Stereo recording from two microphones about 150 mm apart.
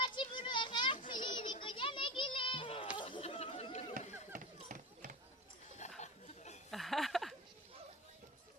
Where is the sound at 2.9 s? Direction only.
30° left (ahead or behind).